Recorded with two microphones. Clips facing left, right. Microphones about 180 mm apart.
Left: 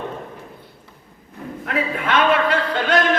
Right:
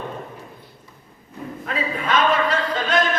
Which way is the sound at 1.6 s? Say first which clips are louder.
Left 2 dB; 70° left (ahead or behind).